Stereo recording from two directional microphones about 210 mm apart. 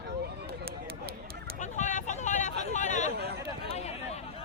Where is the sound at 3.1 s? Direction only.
50° right (ahead or behind).